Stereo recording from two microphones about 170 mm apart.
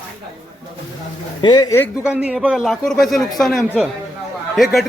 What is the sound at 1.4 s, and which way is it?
Speech, 25° left (ahead or behind).